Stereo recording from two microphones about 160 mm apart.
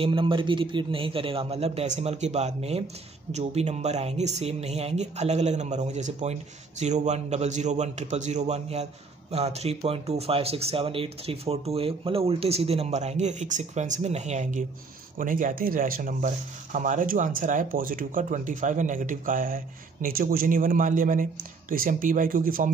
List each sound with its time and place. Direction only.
0.0 s speech: 30° right (ahead or behind)
15.1 s speech: 60° right (ahead or behind)